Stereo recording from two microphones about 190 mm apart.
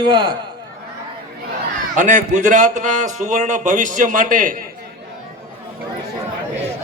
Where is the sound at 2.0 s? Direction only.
40° right (ahead or behind).